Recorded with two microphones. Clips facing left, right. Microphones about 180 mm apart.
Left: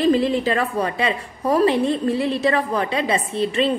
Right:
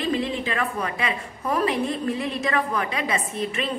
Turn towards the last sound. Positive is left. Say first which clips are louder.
# left 7 dB
turn(degrees=30)  # may be behind; listen again after turning